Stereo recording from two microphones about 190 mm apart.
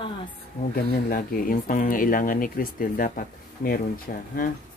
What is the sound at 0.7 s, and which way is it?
Speech, 50° left (ahead or behind).